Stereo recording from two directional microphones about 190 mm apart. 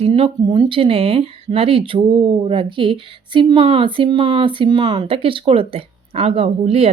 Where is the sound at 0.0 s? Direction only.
30° right (ahead or behind).